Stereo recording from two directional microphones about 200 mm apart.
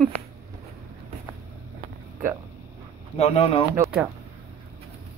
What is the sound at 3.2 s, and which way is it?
Speech, 30° left (ahead or behind).